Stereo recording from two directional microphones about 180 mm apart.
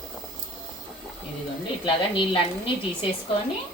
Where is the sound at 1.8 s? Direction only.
25° left (ahead or behind).